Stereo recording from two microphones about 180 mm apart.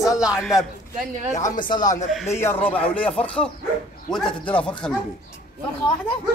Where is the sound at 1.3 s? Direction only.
45° left (ahead or behind).